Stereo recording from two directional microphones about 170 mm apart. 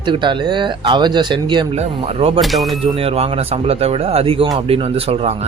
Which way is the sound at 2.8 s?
35° right (ahead or behind).